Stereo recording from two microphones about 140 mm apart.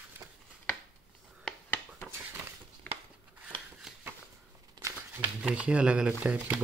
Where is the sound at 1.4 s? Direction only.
15° left (ahead or behind).